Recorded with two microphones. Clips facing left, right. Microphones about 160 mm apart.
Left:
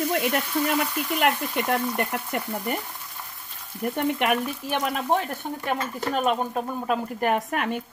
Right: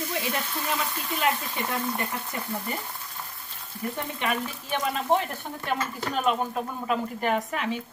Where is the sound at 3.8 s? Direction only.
65° left (ahead or behind).